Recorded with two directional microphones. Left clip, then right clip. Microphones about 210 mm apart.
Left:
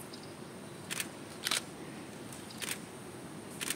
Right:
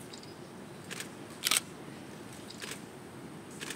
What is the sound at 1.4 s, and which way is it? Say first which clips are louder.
Single-lens reflex camera: right 4 dB; 55° right (ahead or behind).